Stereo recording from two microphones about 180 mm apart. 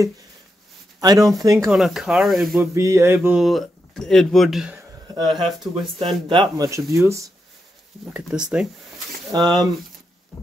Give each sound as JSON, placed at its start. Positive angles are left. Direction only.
{"t": 1.0, "sound": "speech", "side_deg": -20}
{"t": 1.7, "sound": "speech", "side_deg": 0}
{"t": 2.6, "sound": "a sound", "side_deg": -15}
{"t": 3.3, "sound": "speech", "side_deg": 0}
{"t": 4.7, "sound": "a sound", "side_deg": -25}
{"t": 5.3, "sound": "speech", "side_deg": 0}
{"t": 5.9, "sound": "speech", "side_deg": -30}
{"t": 8.1, "sound": "speech", "side_deg": -5}
{"t": 9.3, "sound": "speech", "side_deg": -25}